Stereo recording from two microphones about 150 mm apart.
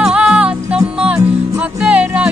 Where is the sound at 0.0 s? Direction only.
5° right (ahead or behind).